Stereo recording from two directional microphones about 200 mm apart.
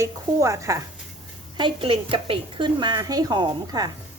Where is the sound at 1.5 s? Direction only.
25° right (ahead or behind).